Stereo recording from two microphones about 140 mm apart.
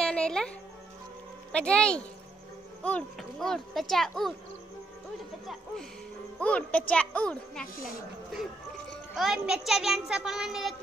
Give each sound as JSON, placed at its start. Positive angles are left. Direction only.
{"t": 0.0, "sound": "music", "side_deg": 5}
{"t": 1.5, "sound": "a child's voice", "side_deg": 5}
{"t": 6.4, "sound": "speech", "side_deg": 10}
{"t": 8.9, "sound": "a child's voice", "side_deg": 0}